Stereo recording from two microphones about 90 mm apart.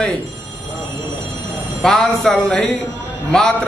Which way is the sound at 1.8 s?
5° left (ahead or behind).